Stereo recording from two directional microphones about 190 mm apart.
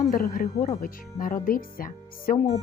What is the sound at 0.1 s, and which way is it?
Speech, 50° left (ahead or behind).